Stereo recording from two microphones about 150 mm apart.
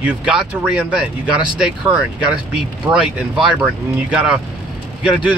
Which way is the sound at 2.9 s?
20° right (ahead or behind).